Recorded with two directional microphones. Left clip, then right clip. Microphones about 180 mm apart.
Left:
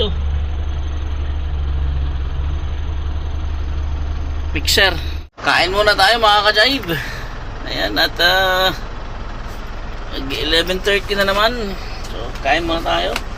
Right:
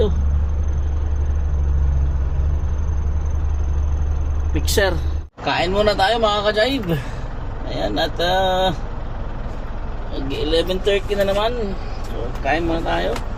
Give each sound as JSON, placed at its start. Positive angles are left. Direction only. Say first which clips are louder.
{"t": 4.5, "sound": "speech", "louder": "left 5 dB", "side_deg": -20}
{"t": 5.5, "sound": "speech", "louder": "left 4 dB", "side_deg": 0}
{"t": 10.2, "sound": "speech", "louder": "left 3 dB", "side_deg": -5}